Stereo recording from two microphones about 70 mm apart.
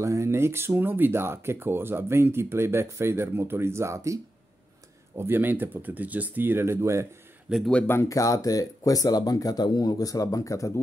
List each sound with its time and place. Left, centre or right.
0.0 s speech: right
5.1 s speech: right
7.8 s speech: left
8.1 s speech: left